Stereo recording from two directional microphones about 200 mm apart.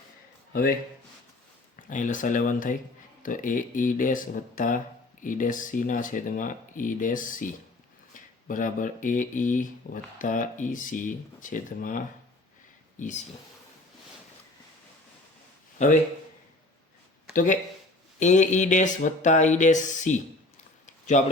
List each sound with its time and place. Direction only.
1.7 s speech: 40° left (ahead or behind)
17.3 s speech: 40° left (ahead or behind)
20.8 s a sound: 40° left (ahead or behind)